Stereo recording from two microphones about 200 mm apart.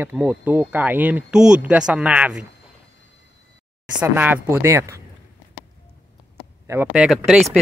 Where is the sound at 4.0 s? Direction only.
10° right (ahead or behind).